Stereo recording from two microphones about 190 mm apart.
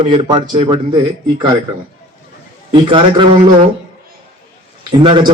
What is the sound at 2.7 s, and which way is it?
Speech, 25° right (ahead or behind).